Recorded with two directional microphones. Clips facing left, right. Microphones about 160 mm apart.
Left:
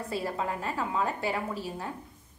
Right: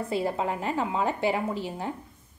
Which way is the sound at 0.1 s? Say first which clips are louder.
Right 4 dB; 25° right (ahead or behind).